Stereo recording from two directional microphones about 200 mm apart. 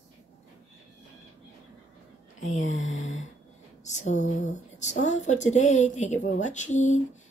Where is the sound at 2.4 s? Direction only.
75° left (ahead or behind).